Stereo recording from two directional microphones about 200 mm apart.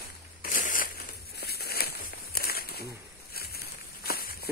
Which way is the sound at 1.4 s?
50° left (ahead or behind).